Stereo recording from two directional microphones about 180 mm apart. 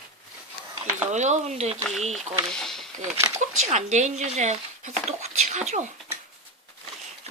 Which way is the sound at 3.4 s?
40° right (ahead or behind).